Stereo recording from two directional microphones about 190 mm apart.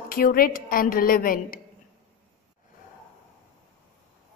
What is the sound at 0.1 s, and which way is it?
A woman's voice, 50° left (ahead or behind).